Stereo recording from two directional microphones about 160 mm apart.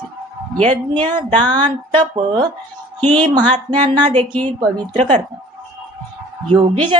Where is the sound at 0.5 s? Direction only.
10° left (ahead or behind).